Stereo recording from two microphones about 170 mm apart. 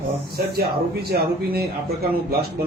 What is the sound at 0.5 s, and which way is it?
Speech, 65° right (ahead or behind).